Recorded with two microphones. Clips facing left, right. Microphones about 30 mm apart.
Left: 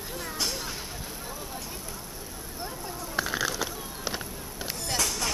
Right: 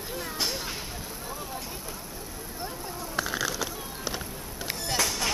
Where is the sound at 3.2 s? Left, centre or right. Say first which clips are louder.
Left 1 dB; centre.